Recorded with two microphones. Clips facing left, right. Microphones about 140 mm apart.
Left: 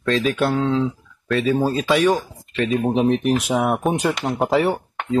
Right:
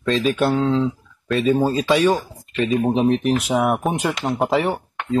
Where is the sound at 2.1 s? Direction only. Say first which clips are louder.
Even; 10° right (ahead or behind).